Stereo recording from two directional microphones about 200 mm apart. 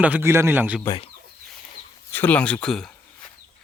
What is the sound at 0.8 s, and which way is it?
Speech, 25° left (ahead or behind).